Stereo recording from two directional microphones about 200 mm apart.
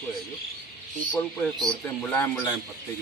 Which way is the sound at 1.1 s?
5° left (ahead or behind).